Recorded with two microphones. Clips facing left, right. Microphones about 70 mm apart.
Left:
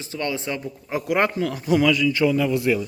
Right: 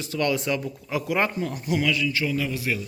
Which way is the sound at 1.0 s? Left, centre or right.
Left.